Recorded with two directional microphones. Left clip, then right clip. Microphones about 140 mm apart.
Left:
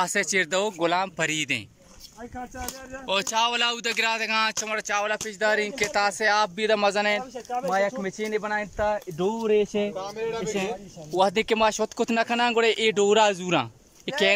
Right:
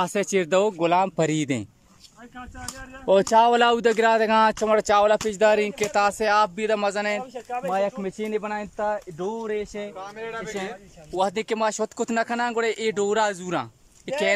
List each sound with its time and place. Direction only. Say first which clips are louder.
0.0 s speech: even; 20° right (ahead or behind)
1.1 s a man's voice: right 2 dB; 40° right (ahead or behind)
3.1 s speech: right 7 dB; 55° right (ahead or behind)
4.6 s speech: right 8 dB; 40° right (ahead or behind)
5.3 s speech: right 4 dB; 20° right (ahead or behind); by 10.4 s 20° left (ahead or behind)
10.4 s speech: left 3 dB; 10° left (ahead or behind)